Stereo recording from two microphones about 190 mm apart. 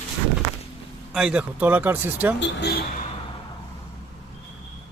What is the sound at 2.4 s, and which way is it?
Speech, 65° left (ahead or behind).